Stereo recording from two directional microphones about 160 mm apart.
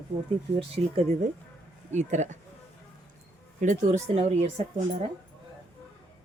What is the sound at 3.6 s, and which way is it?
Speech, 50° right (ahead or behind).